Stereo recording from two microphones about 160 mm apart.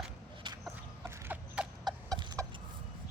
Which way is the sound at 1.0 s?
10° right (ahead or behind).